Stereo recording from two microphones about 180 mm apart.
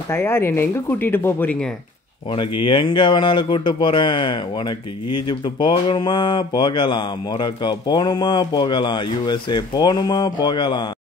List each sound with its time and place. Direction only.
0.1 s speech: 15° left (ahead or behind)
2.3 s speech: 25° left (ahead or behind)